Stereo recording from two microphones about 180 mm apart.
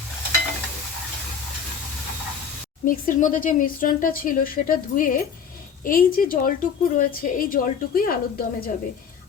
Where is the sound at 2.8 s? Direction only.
50° left (ahead or behind).